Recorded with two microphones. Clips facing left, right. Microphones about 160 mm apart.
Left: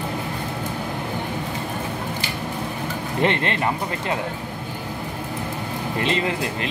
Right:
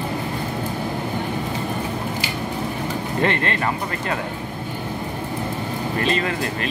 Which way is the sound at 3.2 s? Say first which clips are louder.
Left 1 dB; 20° left (ahead or behind).